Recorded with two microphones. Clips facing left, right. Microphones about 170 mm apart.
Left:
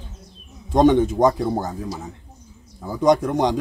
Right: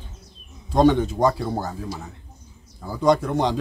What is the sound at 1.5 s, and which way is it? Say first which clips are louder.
A man's voice: left 3 dB; 20° left (ahead or behind).